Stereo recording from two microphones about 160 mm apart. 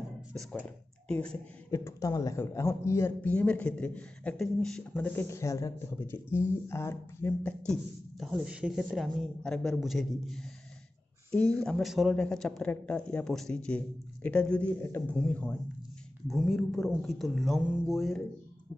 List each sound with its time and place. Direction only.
0.3 s speech: 5° left (ahead or behind)
1.7 s speech: 20° left (ahead or behind)
8.2 s speech: 5° right (ahead or behind)
11.6 s speech: centre (ahead or behind)